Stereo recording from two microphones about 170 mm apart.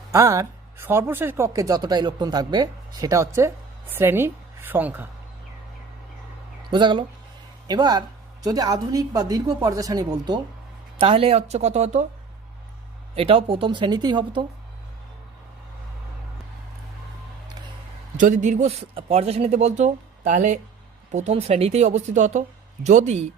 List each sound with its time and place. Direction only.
0.1 s speech: 20° right (ahead or behind)
6.7 s speech: 30° right (ahead or behind)
10.9 s speech: 35° right (ahead or behind)
13.1 s speech: 35° right (ahead or behind)
18.2 s speech: 50° right (ahead or behind)